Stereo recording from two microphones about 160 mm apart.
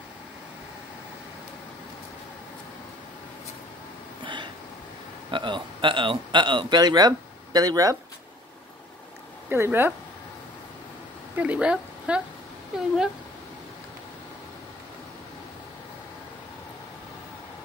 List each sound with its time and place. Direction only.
4.2 s a sound: 30° right (ahead or behind)
5.3 s speech: 30° right (ahead or behind)
9.5 s speech: 15° right (ahead or behind)
11.3 s a woman's voice: 10° right (ahead or behind)